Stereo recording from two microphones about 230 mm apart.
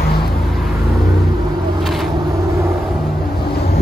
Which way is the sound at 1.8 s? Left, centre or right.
Centre.